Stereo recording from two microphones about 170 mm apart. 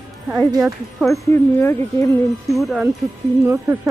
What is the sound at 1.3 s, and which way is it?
Wind chime, 15° left (ahead or behind).